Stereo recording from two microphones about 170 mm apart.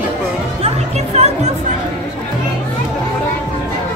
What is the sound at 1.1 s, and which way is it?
Speech, 40° right (ahead or behind).